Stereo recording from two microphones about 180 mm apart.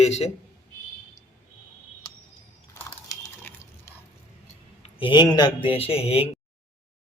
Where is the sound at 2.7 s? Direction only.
15° left (ahead or behind).